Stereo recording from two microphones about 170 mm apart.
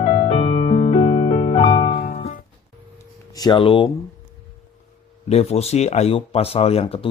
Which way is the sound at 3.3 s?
25° left (ahead or behind).